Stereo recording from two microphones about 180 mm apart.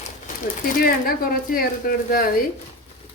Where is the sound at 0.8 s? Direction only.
55° left (ahead or behind).